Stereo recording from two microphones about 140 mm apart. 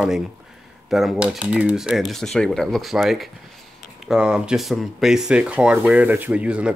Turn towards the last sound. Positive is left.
turn(degrees=-10)  # may be behind; listen again after turning